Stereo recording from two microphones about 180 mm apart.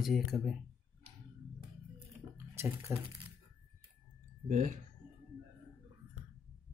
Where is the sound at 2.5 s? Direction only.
15° right (ahead or behind).